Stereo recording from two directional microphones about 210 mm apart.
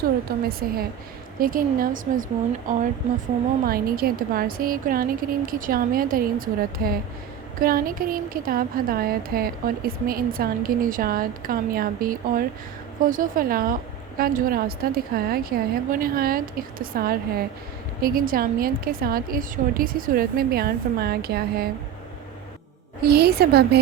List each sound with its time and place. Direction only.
0.3 s a woman's voice: 45° right (ahead or behind)
3.7 s speech: 45° right (ahead or behind)
23.0 s speech: 50° right (ahead or behind)